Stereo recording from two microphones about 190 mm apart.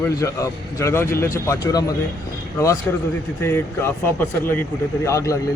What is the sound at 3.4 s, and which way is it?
A man's voice, 10° left (ahead or behind).